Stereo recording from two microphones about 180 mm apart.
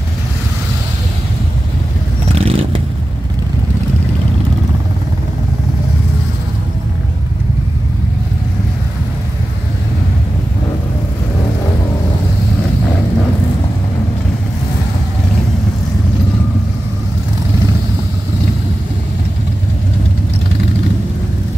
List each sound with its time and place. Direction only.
2.3 s vehicle: 30° right (ahead or behind)